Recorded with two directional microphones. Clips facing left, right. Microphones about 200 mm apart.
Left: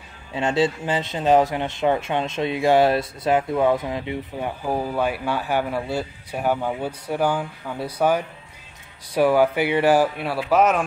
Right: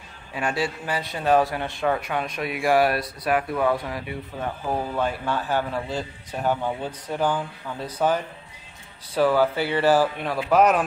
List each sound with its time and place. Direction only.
0.3 s a man's voice: 25° left (ahead or behind)
4.6 s a man's voice: 10° left (ahead or behind)